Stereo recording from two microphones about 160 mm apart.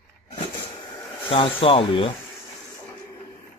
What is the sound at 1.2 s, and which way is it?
Speech, 35° left (ahead or behind).